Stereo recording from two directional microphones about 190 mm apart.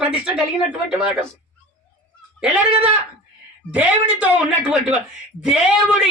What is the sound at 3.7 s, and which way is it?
Speech, 10° right (ahead or behind).